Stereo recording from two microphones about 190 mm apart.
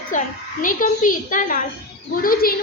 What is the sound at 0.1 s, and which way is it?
A woman's voice, 40° left (ahead or behind).